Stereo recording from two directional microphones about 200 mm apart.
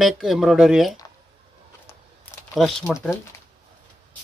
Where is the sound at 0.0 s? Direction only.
Centre (ahead or behind).